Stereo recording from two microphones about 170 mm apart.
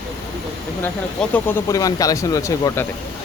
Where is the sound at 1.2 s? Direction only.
10° left (ahead or behind).